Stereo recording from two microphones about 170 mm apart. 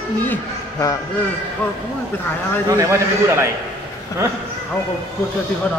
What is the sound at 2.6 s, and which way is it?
Speech, 20° right (ahead or behind).